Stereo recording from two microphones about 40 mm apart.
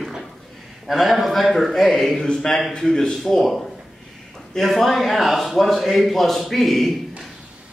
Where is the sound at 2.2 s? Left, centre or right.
Centre.